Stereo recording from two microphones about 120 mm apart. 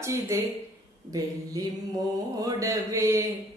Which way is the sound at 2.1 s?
30° right (ahead or behind).